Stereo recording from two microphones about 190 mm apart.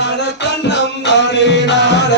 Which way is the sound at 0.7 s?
65° left (ahead or behind).